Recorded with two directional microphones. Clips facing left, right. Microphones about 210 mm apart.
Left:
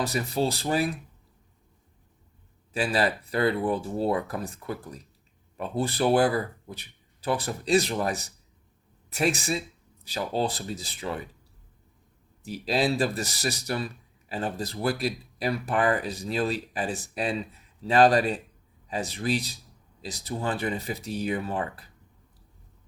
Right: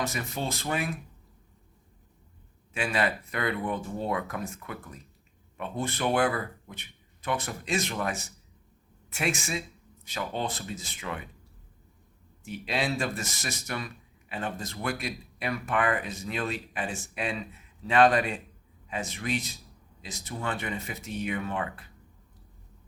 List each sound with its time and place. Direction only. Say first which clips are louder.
0.0 s speech: left 6 dB; 35° left (ahead or behind)
2.7 s speech: left 3 dB; 35° left (ahead or behind)
12.5 s speech: left 5 dB; 35° left (ahead or behind)